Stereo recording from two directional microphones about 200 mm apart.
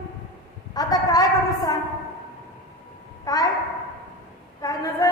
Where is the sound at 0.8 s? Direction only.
20° left (ahead or behind).